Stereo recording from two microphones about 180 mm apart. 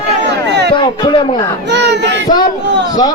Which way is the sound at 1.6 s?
70° right (ahead or behind).